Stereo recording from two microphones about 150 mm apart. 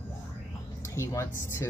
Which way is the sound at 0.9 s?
20° left (ahead or behind).